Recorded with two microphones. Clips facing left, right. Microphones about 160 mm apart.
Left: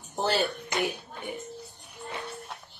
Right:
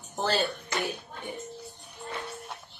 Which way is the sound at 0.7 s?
15° left (ahead or behind).